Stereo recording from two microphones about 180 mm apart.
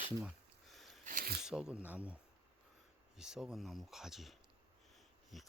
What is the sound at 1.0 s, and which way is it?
Speech, 55° right (ahead or behind).